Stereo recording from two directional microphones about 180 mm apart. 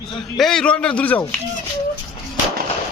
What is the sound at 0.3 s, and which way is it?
A man's voice, 5° left (ahead or behind).